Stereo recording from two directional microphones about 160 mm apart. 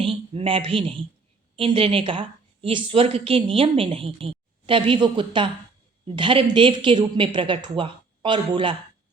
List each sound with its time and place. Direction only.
0.0 s a woman's voice: 35° right (ahead or behind)